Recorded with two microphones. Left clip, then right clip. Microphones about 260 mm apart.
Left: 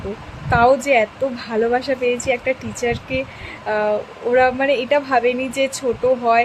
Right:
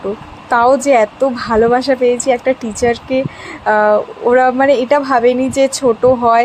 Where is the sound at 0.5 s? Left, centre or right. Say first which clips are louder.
Right 4 dB; centre.